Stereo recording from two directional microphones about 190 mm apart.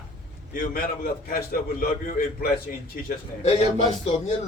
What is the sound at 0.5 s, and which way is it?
A man's voice, 50° left (ahead or behind).